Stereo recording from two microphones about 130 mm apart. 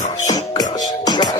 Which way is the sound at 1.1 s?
30° left (ahead or behind).